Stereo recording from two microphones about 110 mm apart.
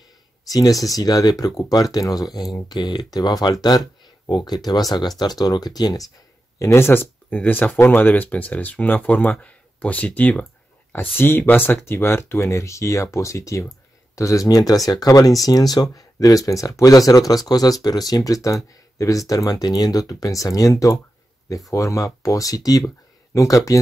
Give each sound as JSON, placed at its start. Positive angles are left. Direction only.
{"t": 0.5, "sound": "speech", "side_deg": 35}
{"t": 6.6, "sound": "speech", "side_deg": 25}